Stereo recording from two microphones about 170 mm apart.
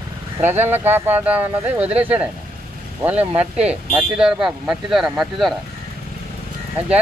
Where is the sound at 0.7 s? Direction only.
10° right (ahead or behind).